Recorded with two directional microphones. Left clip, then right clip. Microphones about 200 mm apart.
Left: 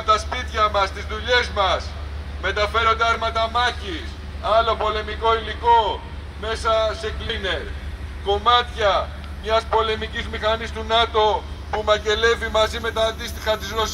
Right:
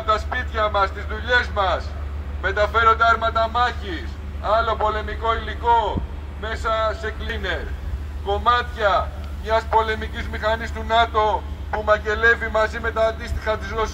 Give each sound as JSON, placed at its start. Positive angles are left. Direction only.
{"t": 0.0, "sound": "music", "side_deg": 35}
{"t": 1.2, "sound": "a man's voice", "side_deg": 35}
{"t": 12.6, "sound": "a man's voice", "side_deg": -5}